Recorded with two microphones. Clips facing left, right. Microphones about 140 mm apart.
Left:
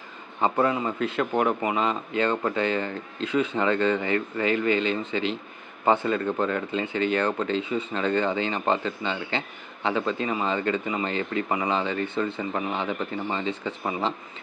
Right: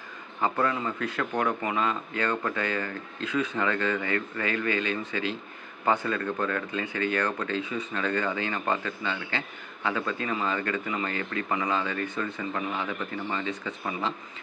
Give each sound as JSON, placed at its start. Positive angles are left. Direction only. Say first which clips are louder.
{"t": 0.4, "sound": "speech", "louder": "left 4 dB", "side_deg": 20}